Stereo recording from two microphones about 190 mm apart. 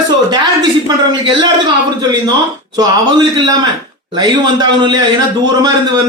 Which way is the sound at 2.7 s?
25° right (ahead or behind).